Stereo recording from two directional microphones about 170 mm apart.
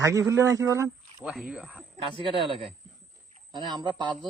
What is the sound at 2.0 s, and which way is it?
A man's voice, 30° right (ahead or behind).